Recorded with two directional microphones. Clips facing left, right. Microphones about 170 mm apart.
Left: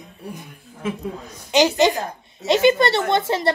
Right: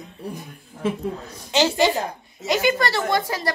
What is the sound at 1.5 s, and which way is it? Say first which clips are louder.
A woman's voice: left 3 dB; 15° left (ahead or behind).